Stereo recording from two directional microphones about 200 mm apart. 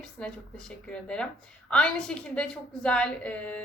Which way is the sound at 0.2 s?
5° left (ahead or behind).